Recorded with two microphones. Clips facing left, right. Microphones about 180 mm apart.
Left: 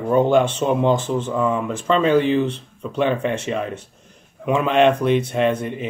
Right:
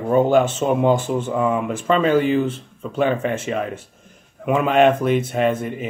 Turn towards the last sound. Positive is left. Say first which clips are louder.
# even
turn(degrees=-5)  # may be behind; listen again after turning